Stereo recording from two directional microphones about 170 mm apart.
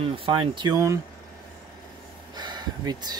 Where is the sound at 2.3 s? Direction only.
25° right (ahead or behind).